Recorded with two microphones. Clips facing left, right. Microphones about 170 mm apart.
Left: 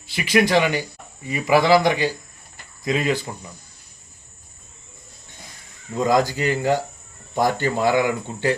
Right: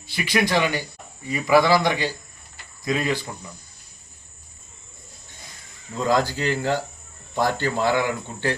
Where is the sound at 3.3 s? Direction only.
15° left (ahead or behind).